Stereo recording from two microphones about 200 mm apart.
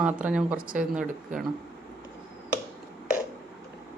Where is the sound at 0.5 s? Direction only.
45° right (ahead or behind).